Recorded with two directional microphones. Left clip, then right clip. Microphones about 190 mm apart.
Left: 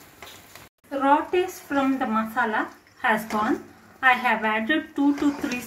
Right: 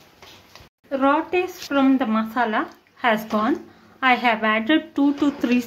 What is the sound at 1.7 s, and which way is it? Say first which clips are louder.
Speech: right 5 dB; 55° right (ahead or behind).